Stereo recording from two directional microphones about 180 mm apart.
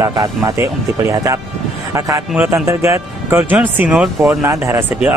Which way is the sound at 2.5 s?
15° right (ahead or behind).